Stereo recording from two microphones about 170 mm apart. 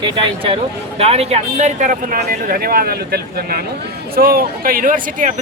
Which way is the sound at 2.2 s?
60° right (ahead or behind).